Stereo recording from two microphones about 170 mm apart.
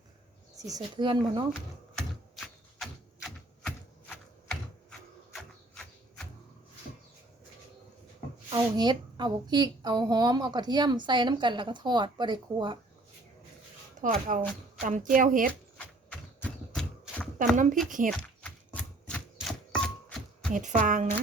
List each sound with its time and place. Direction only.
0.5 s a sound: 20° right (ahead or behind)
0.8 s a woman's voice: 30° right (ahead or behind)
2.0 s a sound: centre (ahead or behind)
8.5 s a woman's voice: 25° right (ahead or behind)
14.0 s a woman's voice: 50° right (ahead or behind)
16.4 s a sound: 10° left (ahead or behind)
17.8 s a woman's voice: 50° right (ahead or behind)
18.1 s chopping: 5° left (ahead or behind)
20.5 s a woman's voice: 50° right (ahead or behind)